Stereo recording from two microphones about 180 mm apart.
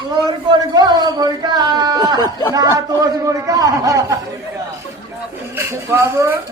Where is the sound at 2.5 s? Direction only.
20° right (ahead or behind).